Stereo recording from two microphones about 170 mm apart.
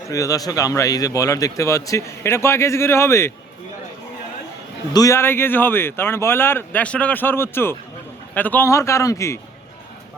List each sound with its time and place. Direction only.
0.1 s a man's voice: 20° left (ahead or behind)
4.9 s speech: 15° left (ahead or behind)